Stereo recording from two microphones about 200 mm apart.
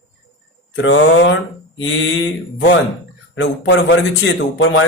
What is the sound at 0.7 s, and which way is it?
A man's voice, 65° left (ahead or behind).